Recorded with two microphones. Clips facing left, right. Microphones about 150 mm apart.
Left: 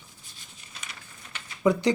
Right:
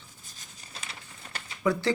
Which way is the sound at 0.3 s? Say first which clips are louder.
Right 1 dB; 35° right (ahead or behind).